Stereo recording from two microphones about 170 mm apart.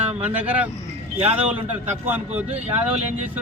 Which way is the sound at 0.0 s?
10° right (ahead or behind).